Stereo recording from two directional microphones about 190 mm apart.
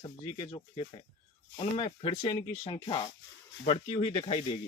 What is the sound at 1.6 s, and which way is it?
Speech, 30° left (ahead or behind).